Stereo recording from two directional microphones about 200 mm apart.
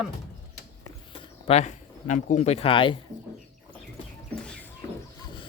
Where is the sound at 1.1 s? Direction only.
30° left (ahead or behind).